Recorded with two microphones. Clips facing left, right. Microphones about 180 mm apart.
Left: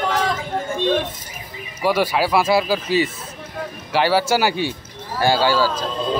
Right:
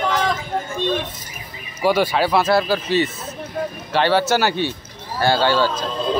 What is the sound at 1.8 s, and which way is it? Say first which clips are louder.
Speech: right 1 dB; 5° left (ahead or behind).